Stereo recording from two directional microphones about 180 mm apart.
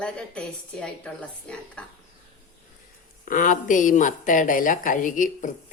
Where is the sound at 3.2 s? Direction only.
45° left (ahead or behind).